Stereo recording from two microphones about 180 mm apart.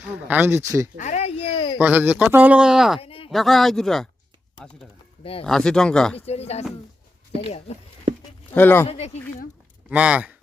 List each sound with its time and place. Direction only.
0.3 s speech: 10° right (ahead or behind)
0.9 s a sound: 40° left (ahead or behind)
1.8 s speech: 10° right (ahead or behind)
3.0 s a sound: 30° left (ahead or behind)
3.2 s speech: centre (ahead or behind)
5.2 s speech: 30° left (ahead or behind)
5.5 s speech: 5° left (ahead or behind)
6.1 s speech: 35° left (ahead or behind)
7.7 s speech: 35° left (ahead or behind)
8.5 s speech: 10° left (ahead or behind)
8.9 s speech: 35° left (ahead or behind)
9.9 s speech: 5° right (ahead or behind)